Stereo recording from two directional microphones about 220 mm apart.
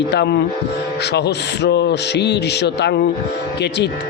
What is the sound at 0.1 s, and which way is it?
Speech, 50° left (ahead or behind).